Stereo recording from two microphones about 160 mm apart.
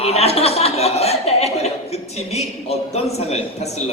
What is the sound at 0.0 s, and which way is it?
A man's voice, 40° left (ahead or behind).